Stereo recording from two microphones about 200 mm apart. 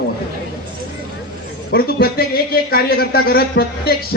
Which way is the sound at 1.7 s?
50° left (ahead or behind).